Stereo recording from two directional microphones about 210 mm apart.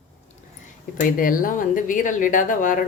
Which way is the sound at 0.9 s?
40° left (ahead or behind).